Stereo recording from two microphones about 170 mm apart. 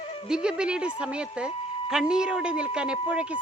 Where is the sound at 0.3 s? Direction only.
5° right (ahead or behind).